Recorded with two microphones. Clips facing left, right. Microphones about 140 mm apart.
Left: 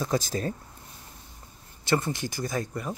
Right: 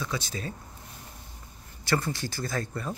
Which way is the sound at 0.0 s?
45° left (ahead or behind).